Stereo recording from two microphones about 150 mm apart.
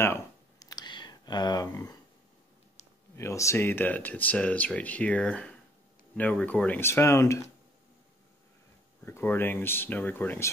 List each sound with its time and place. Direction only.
0.0 s a sound: 20° left (ahead or behind)
3.2 s speech: 20° left (ahead or behind)
9.0 s speech: 15° left (ahead or behind)